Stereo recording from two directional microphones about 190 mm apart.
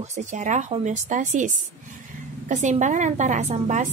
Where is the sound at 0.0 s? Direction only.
40° right (ahead or behind).